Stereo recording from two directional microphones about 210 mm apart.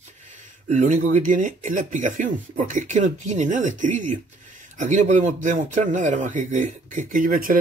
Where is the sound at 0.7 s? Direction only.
35° right (ahead or behind).